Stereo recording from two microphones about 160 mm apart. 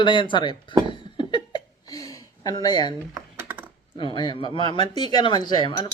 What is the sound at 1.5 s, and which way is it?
Hiccup, 25° left (ahead or behind).